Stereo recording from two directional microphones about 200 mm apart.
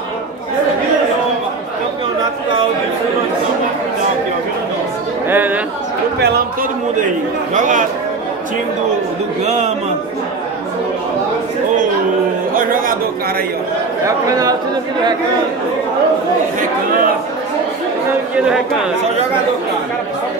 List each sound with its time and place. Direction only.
5.3 s chatter: 10° right (ahead or behind)
7.5 s a man's voice: 40° right (ahead or behind)
12.5 s a sound: 45° right (ahead or behind)
14.0 s speech: 15° right (ahead or behind)